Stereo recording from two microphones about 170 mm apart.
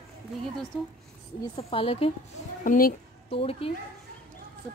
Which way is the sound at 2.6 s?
50° left (ahead or behind).